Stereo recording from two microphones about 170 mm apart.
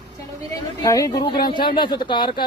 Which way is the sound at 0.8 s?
20° left (ahead or behind).